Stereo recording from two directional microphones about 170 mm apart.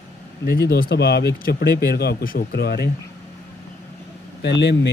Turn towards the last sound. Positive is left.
turn(degrees=90)